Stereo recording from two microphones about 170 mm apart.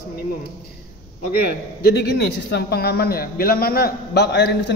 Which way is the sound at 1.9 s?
75° left (ahead or behind).